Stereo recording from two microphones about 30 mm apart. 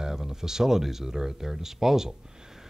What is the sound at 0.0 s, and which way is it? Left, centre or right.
Speech, centre.